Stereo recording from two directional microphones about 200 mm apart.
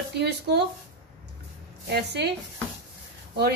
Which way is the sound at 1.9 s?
55° right (ahead or behind).